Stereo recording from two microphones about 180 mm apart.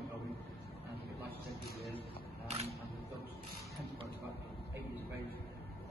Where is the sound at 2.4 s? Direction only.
35° right (ahead or behind).